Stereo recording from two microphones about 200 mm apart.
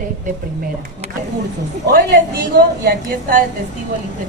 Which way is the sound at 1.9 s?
55° right (ahead or behind).